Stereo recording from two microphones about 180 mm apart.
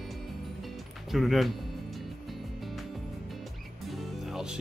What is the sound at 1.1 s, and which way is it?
Speech, centre (ahead or behind).